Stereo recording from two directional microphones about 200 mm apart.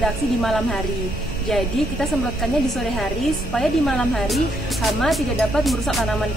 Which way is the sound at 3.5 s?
Centre (ahead or behind).